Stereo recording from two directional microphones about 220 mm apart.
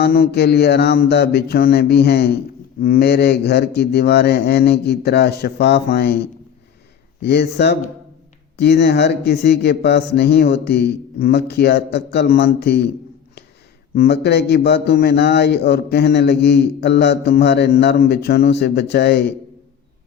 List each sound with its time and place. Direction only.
0.0 s a man's voice: 45° left (ahead or behind)
7.2 s a man's voice: 50° left (ahead or behind)
13.9 s a man's voice: 45° left (ahead or behind)